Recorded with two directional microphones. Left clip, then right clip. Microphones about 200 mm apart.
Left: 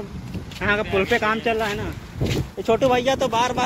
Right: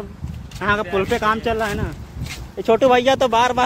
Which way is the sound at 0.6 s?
20° right (ahead or behind).